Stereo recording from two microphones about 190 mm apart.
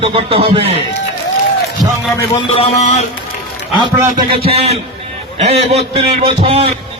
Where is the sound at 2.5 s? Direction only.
35° left (ahead or behind).